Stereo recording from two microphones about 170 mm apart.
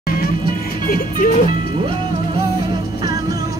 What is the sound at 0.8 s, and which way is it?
Speech, 60° left (ahead or behind).